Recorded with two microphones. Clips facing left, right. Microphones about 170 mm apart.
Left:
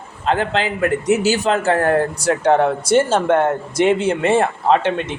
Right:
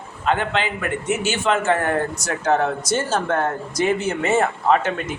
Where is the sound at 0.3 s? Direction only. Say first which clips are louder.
Left 3 dB; 35° left (ahead or behind).